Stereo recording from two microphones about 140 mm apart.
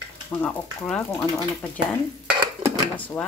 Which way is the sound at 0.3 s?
10° left (ahead or behind).